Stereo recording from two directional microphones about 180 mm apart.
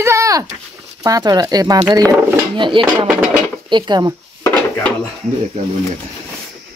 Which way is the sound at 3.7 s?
25° right (ahead or behind).